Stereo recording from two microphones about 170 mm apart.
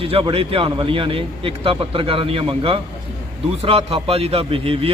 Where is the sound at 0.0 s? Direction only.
30° right (ahead or behind).